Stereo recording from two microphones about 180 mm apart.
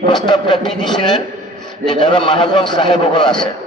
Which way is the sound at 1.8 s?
25° left (ahead or behind).